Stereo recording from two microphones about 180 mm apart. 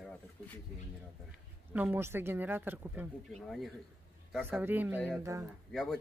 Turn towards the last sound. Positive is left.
turn(degrees=0)  # may be behind; listen again after turning